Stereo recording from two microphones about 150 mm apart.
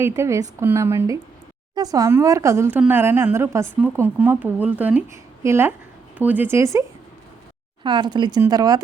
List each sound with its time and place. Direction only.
0.0 s speech: 20° right (ahead or behind)
7.9 s speech: 30° right (ahead or behind)